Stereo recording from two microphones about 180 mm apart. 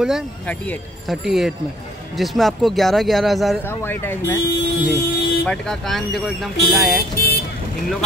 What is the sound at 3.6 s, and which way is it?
Speech, 10° left (ahead or behind).